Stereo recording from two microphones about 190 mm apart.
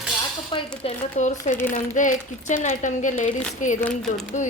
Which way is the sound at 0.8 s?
40° left (ahead or behind).